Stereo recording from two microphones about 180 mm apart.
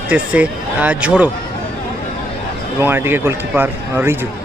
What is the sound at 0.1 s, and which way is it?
Speech, 10° right (ahead or behind).